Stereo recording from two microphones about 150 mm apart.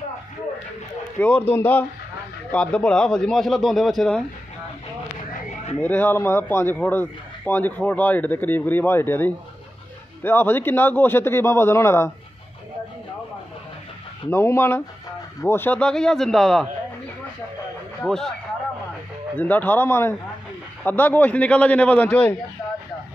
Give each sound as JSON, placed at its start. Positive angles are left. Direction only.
{"t": 1.2, "sound": "a man's voice", "side_deg": 10}
{"t": 5.8, "sound": "speech", "side_deg": 10}
{"t": 14.3, "sound": "a man's voice", "side_deg": 15}
{"t": 18.0, "sound": "a man's voice", "side_deg": 5}
{"t": 19.3, "sound": "speech", "side_deg": 10}